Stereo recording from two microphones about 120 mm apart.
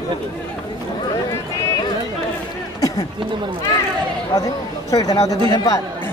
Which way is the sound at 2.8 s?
30° left (ahead or behind).